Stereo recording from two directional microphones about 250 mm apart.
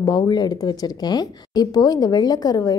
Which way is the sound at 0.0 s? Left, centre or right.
Centre.